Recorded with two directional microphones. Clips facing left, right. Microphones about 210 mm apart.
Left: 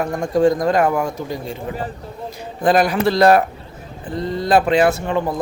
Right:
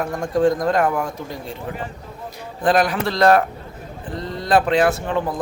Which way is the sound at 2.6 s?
Centre (ahead or behind).